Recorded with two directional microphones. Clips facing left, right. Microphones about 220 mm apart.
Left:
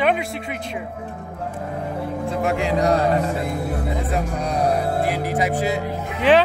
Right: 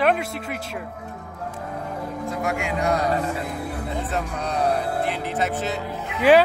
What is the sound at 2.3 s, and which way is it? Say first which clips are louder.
Music: left 5 dB; 30° left (ahead or behind).